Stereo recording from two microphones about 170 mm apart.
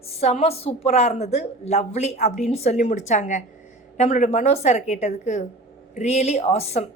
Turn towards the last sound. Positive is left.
turn(degrees=40)  # may be behind; listen again after turning